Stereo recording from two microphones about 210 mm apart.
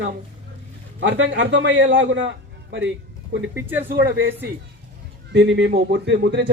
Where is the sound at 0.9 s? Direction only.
60° right (ahead or behind).